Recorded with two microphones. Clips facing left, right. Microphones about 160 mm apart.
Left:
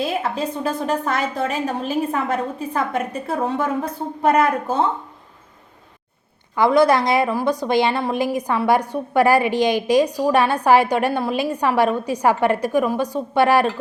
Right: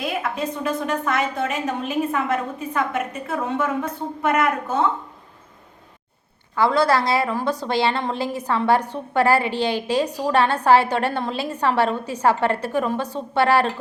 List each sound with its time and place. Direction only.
0.0 s a woman's voice: 30° left (ahead or behind)
6.6 s a woman's voice: 15° left (ahead or behind)